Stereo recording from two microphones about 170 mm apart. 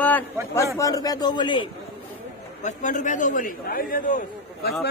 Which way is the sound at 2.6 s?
45° left (ahead or behind).